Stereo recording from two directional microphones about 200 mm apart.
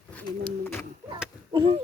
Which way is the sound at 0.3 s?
10° left (ahead or behind).